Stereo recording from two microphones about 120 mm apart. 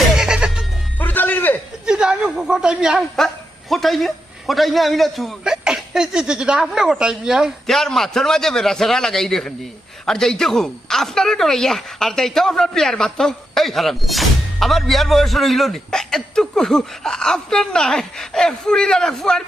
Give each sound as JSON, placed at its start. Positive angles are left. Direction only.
{"t": 0.0, "sound": "goat", "side_deg": -5}
{"t": 0.9, "sound": "music", "side_deg": 15}
{"t": 1.9, "sound": "speech", "side_deg": -5}